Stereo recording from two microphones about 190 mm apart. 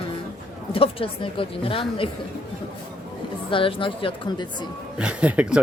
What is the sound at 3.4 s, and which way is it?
A woman's voice, 25° left (ahead or behind).